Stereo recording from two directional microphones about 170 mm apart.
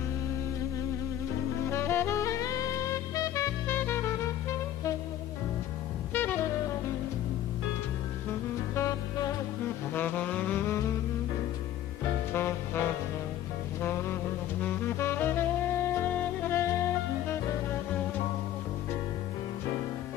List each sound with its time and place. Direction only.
1.7 s saxophone: 15° left (ahead or behind)
6.1 s saxophone: 10° left (ahead or behind)
8.7 s music: 20° left (ahead or behind)
12.3 s music: 15° left (ahead or behind)
14.6 s saxophone: 10° left (ahead or behind)
16.0 s music: 10° left (ahead or behind)